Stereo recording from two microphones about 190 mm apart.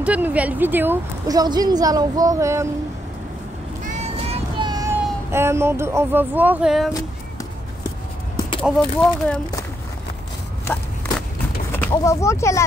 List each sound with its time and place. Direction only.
0.0 s a woman's voice: 5° right (ahead or behind)
3.8 s child singing: 35° right (ahead or behind); by 6.9 s 5° right (ahead or behind)
8.4 s a sound: 25° left (ahead or behind)
8.6 s speech: 5° left (ahead or behind)
11.8 s speech: 15° left (ahead or behind)